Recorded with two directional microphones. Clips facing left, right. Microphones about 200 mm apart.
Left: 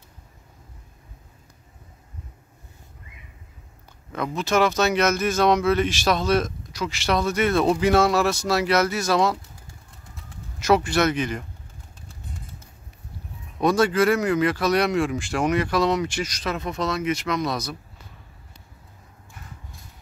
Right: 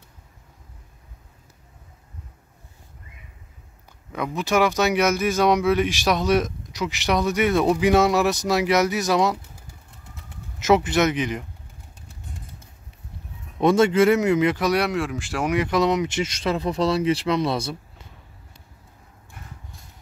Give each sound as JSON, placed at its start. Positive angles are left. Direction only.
{"t": 4.4, "sound": "speech", "side_deg": -15}
{"t": 10.6, "sound": "speech", "side_deg": -20}
{"t": 13.6, "sound": "speech", "side_deg": -25}
{"t": 15.6, "sound": "speech", "side_deg": -20}